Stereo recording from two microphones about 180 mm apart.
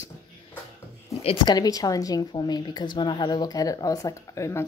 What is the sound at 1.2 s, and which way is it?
A woman's voice, 25° left (ahead or behind).